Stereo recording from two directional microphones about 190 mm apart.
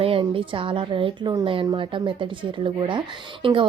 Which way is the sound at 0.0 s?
30° right (ahead or behind).